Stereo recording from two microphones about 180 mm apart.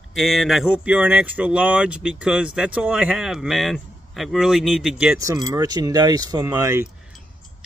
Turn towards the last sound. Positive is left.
turn(degrees=-15)  # may be behind; listen again after turning